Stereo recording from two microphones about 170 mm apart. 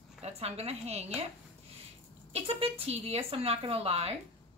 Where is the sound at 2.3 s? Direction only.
35° right (ahead or behind).